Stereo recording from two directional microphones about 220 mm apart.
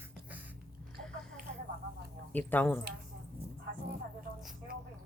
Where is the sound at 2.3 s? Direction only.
5° left (ahead or behind).